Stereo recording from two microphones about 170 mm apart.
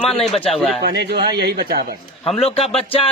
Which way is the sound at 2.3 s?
35° left (ahead or behind).